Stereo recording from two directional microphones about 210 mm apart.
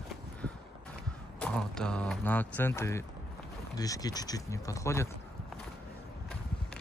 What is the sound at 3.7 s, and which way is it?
Speech, 15° left (ahead or behind).